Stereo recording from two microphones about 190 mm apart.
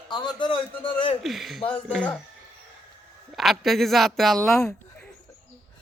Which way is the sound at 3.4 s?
Centre (ahead or behind).